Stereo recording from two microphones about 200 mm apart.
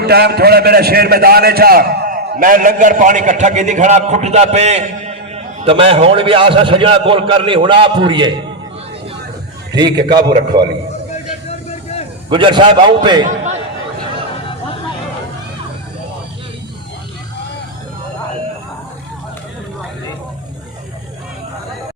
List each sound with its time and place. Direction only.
0.0 s a man's voice: 55° right (ahead or behind); by 8.3 s 25° right (ahead or behind)
9.7 s a man's voice: 20° right (ahead or behind)
12.3 s a man's voice: 25° right (ahead or behind)